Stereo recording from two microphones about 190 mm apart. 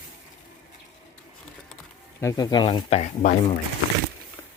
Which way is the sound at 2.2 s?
20° left (ahead or behind).